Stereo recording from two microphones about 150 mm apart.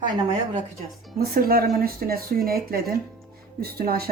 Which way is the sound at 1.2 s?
80° right.